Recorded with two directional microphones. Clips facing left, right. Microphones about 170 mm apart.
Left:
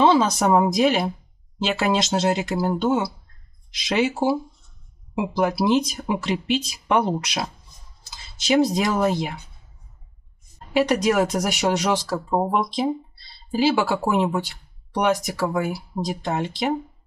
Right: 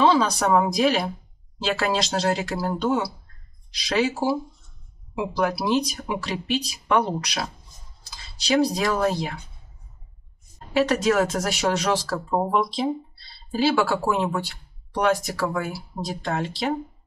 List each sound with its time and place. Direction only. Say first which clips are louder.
0.0 s speech: left 2 dB; 25° left (ahead or behind)
3.7 s speech: left 1 dB; 20° left (ahead or behind)
10.7 s speech: left 1 dB; 15° left (ahead or behind)